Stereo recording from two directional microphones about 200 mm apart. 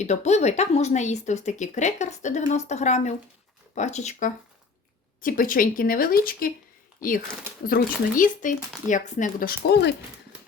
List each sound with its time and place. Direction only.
0.0 s a woman's voice: 35° left (ahead or behind)
7.6 s a woman's voice: 45° left (ahead or behind)